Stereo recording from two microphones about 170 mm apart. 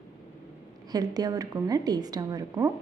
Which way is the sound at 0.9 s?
25° right (ahead or behind).